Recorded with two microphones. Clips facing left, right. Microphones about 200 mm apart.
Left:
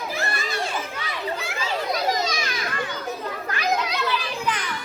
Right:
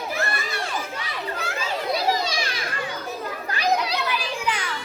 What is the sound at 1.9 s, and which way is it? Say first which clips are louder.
Children playing: right 2 dB; 30° right (ahead or behind).